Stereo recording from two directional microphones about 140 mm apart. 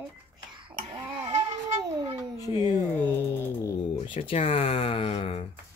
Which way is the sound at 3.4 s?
20° left (ahead or behind).